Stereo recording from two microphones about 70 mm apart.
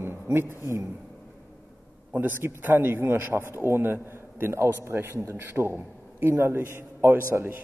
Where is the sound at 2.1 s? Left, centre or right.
Right.